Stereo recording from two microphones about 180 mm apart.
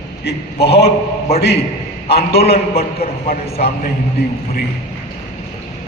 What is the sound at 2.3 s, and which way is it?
Speech, 35° left (ahead or behind).